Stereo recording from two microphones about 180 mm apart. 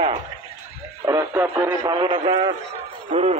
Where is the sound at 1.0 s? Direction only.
15° right (ahead or behind).